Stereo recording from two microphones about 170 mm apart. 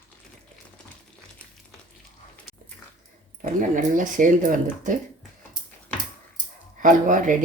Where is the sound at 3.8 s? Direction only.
50° right (ahead or behind).